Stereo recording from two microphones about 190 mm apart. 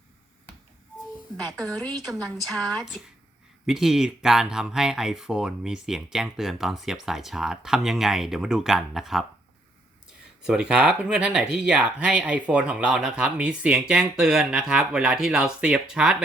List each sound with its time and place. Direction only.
1.5 s speech: centre (ahead or behind)
1.9 s a woman's voice: 20° right (ahead or behind)
2.5 s speech: 5° left (ahead or behind)
10.4 s speech: 5° right (ahead or behind)